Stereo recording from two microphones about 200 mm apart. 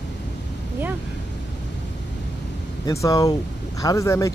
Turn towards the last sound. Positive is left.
turn(degrees=15)  # may be behind; listen again after turning